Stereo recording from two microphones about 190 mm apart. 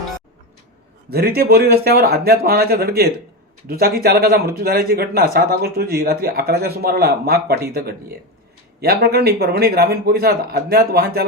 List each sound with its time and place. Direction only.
1.1 s speech: 55° right (ahead or behind)